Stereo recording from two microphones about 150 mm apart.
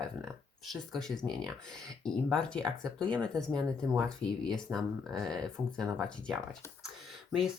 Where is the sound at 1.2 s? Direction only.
Centre (ahead or behind).